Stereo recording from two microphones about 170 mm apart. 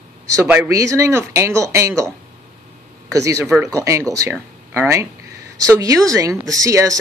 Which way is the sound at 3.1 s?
20° right (ahead or behind).